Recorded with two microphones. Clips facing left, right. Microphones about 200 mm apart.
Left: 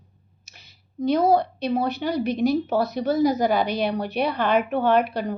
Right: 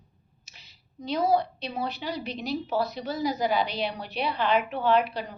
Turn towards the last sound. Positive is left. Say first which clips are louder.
# left 4 dB
turn(degrees=50)  # may be behind; listen again after turning